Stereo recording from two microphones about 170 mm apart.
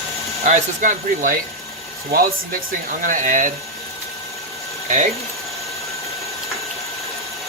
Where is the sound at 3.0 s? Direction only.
50° right (ahead or behind).